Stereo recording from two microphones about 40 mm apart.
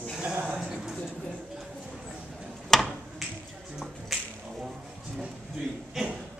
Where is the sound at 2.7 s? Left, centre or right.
Centre.